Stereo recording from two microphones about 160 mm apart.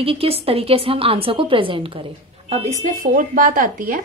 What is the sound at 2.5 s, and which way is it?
Speech, 50° right (ahead or behind).